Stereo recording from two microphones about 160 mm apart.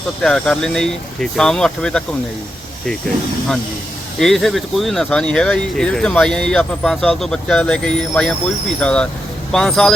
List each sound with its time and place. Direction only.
0.2 s speech: 5° left (ahead or behind)
4.2 s speech: centre (ahead or behind)